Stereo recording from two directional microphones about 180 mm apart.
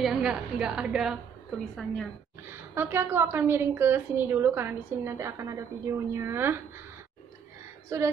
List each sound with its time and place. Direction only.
0.0 s a woman's voice: 5° right (ahead or behind)
2.5 s a woman's voice: 10° right (ahead or behind)
7.9 s speech: 20° right (ahead or behind)